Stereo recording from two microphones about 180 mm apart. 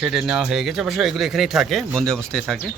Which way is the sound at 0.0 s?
5° right (ahead or behind).